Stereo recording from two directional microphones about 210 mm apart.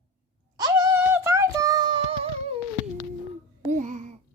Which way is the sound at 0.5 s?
15° right (ahead or behind).